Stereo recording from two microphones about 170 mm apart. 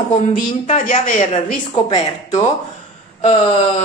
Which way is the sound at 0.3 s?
50° left (ahead or behind).